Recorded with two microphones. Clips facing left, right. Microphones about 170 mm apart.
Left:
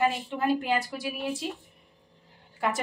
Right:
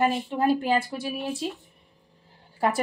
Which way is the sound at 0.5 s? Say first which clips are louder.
Right 2 dB; 30° right (ahead or behind).